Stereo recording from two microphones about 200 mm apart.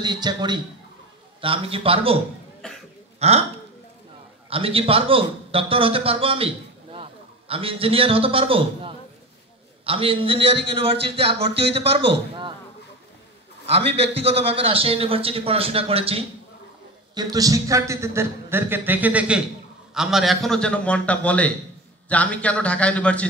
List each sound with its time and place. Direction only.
0.0 s a man's voice: 20° right (ahead or behind)
2.6 s cough: 5° left (ahead or behind)
3.2 s speech: 30° right (ahead or behind)
4.5 s a man's voice: 30° right (ahead or behind)
13.9 s a man's voice: 30° right (ahead or behind); by 23.2 s 5° left (ahead or behind)